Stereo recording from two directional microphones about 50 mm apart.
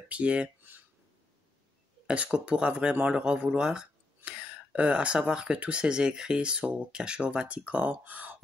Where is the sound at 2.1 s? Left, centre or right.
Right.